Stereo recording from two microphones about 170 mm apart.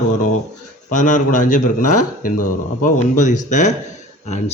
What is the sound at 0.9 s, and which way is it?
A man's voice, 50° left (ahead or behind).